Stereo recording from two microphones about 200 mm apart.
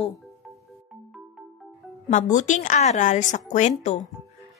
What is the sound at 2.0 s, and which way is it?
Speech, 40° left (ahead or behind).